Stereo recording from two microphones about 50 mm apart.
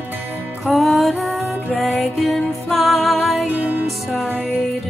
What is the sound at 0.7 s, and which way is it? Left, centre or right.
Music, centre.